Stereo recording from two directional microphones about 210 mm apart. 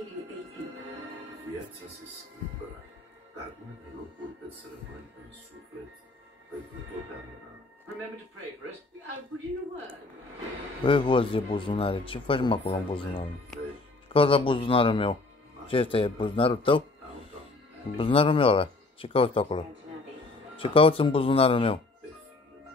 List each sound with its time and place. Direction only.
10.8 s speech: 25° left (ahead or behind)
14.0 s speech: 25° left (ahead or behind)
17.9 s speech: 25° left (ahead or behind)